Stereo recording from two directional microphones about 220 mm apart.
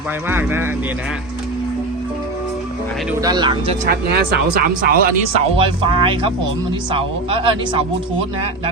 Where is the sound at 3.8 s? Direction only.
40° right (ahead or behind).